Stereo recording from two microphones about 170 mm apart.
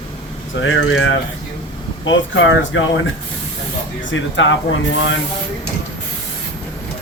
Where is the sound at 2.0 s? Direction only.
90° left.